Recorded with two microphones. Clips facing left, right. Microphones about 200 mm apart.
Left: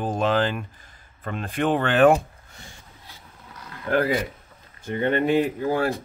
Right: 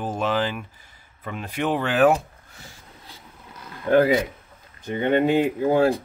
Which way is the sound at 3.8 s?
25° right (ahead or behind).